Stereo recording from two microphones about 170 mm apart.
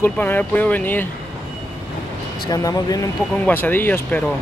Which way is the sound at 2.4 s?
20° left (ahead or behind).